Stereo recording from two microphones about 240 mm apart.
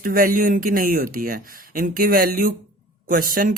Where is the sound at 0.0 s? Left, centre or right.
Right.